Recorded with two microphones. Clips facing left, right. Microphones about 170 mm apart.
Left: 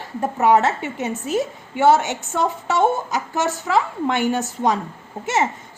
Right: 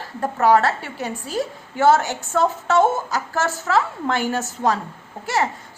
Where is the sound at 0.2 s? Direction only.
20° left (ahead or behind).